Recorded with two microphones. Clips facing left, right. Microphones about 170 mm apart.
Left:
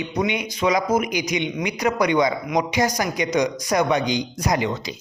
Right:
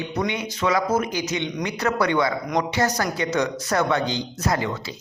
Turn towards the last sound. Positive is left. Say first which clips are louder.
# left 2 dB
turn(degrees=20)  # may be behind; listen again after turning